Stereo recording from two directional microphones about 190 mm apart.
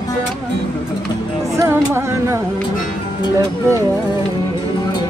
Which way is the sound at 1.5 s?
15° right (ahead or behind).